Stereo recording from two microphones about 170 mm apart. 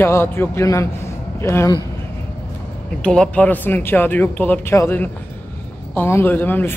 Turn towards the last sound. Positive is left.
turn(degrees=10)  # may be behind; listen again after turning